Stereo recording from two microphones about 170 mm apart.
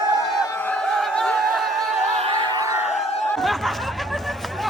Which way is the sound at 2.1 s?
30° right (ahead or behind).